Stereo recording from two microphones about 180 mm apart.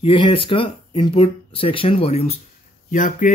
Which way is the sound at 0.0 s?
30° left (ahead or behind).